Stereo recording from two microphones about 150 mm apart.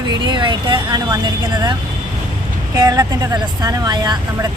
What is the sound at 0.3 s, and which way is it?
Speech, 30° right (ahead or behind).